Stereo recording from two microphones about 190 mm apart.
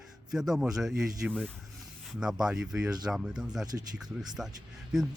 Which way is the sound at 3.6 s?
20° right (ahead or behind).